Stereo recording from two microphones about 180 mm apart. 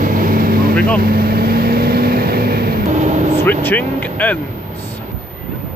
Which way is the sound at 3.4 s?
10° left (ahead or behind).